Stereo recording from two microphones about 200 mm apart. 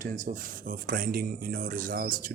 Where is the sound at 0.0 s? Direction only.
40° right (ahead or behind).